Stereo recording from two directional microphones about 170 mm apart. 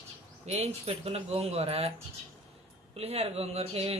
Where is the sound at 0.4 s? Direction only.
40° right (ahead or behind).